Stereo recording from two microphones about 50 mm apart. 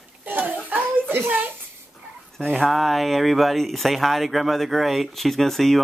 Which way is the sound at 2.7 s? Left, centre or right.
Centre.